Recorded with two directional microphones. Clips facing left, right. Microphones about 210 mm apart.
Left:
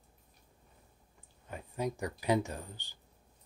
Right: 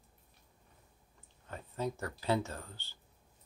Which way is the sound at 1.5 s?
15° left (ahead or behind).